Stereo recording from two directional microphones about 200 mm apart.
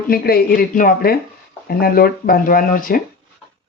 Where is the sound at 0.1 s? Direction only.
50° left (ahead or behind).